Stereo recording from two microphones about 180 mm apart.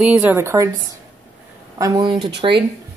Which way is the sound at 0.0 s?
10° right (ahead or behind).